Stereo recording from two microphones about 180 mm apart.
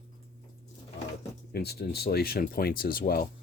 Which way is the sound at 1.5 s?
65° left (ahead or behind).